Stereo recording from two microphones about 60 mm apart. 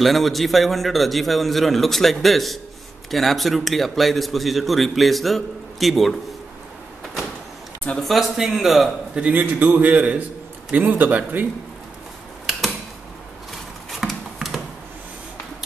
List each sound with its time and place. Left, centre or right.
0.0 s a man's voice: centre
8.0 s a man's voice: centre
9.3 s a man's voice: right
13.8 s a sound: centre